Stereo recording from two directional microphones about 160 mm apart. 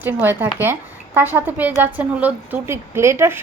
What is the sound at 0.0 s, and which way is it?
Speech, 15° right (ahead or behind).